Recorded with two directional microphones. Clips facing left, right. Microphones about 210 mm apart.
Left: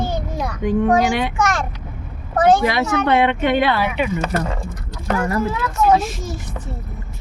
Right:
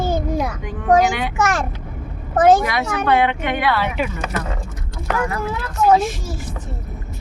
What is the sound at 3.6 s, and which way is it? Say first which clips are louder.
Speech: left 2 dB; 15° left (ahead or behind).